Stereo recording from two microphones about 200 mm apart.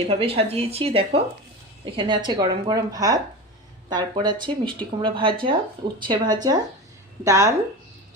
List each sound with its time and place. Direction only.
0.1 s a woman's voice: 30° right (ahead or behind); by 7.5 s 15° right (ahead or behind)